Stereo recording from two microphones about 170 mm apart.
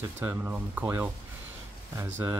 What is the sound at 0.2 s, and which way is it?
Speech, 10° right (ahead or behind).